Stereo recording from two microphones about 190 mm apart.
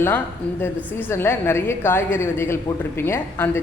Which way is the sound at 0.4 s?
5° left (ahead or behind).